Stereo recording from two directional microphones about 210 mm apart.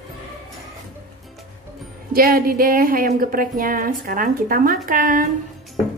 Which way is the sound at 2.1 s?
45° right (ahead or behind).